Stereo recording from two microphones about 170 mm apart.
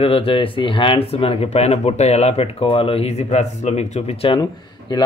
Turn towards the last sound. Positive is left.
turn(degrees=25)  # may be behind; listen again after turning